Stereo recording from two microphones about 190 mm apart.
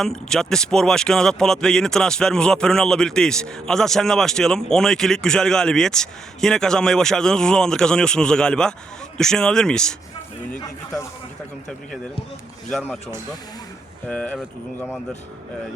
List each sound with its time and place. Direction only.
0.0 s speech: 5° left (ahead or behind)
12.7 s speech: centre (ahead or behind)
14.1 s speech: 5° left (ahead or behind)